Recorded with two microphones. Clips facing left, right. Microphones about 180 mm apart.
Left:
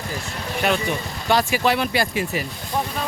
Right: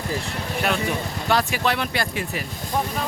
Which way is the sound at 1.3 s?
Centre (ahead or behind).